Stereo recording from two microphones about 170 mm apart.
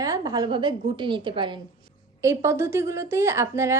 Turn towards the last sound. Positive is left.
turn(degrees=-15)  # may be behind; listen again after turning